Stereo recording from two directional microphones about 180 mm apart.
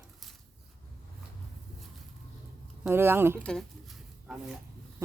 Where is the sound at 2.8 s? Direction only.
15° right (ahead or behind).